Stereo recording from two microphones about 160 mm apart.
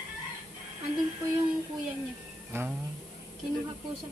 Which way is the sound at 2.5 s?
15° right (ahead or behind).